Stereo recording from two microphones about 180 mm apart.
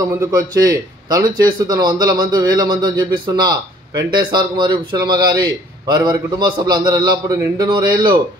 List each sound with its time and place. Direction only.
0.0 s speech: 15° right (ahead or behind)